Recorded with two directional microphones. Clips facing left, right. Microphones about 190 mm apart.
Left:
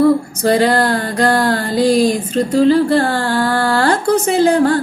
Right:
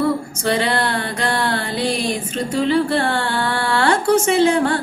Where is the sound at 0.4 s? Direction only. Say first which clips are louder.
Left 6 dB; 40° left (ahead or behind).